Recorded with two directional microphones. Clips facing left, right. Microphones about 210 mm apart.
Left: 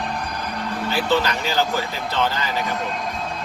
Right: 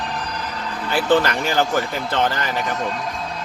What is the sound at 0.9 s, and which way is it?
Speech, 50° right (ahead or behind).